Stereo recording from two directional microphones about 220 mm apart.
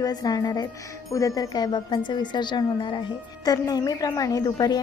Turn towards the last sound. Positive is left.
turn(degrees=20)  # may be behind; listen again after turning